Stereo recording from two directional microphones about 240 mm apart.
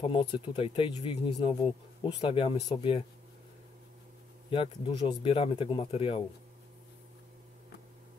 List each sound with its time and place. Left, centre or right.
0.0 s speech: left
4.5 s speech: left